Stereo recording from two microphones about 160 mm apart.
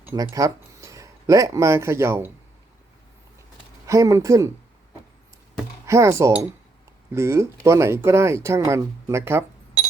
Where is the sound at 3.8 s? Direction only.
20° right (ahead or behind).